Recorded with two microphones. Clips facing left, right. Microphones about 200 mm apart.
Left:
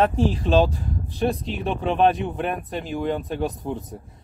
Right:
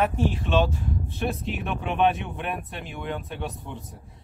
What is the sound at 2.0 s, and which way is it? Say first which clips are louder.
Speech: left 3 dB; centre (ahead or behind).